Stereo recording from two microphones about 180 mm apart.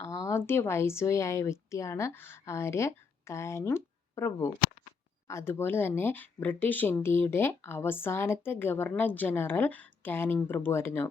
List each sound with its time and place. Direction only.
0.0 s speech: 15° left (ahead or behind)